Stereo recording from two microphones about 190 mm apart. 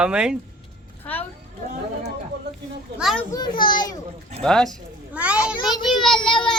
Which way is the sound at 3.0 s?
Centre (ahead or behind).